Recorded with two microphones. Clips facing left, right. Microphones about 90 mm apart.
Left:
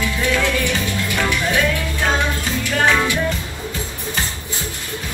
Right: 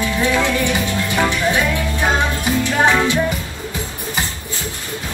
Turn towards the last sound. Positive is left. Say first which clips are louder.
# right 2 dB
turn(degrees=-20)  # may be behind; listen again after turning